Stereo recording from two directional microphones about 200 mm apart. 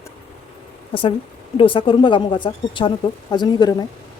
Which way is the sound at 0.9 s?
25° left (ahead or behind).